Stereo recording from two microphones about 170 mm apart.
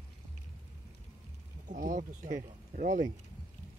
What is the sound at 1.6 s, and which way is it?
Speech, 50° right (ahead or behind).